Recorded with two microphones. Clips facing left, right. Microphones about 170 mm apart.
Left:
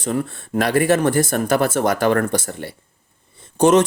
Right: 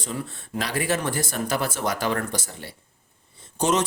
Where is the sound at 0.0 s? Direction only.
55° left (ahead or behind).